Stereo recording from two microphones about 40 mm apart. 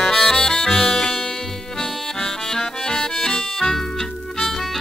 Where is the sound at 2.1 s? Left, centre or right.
Centre.